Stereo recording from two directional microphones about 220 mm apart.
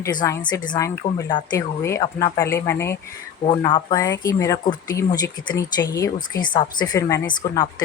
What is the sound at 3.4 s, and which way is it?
A woman's voice, 20° left (ahead or behind).